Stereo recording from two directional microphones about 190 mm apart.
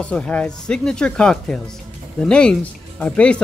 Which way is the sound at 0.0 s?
5° left (ahead or behind).